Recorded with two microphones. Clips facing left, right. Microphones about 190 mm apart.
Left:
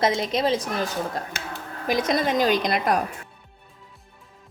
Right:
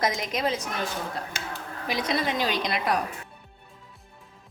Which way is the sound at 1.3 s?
55° left (ahead or behind).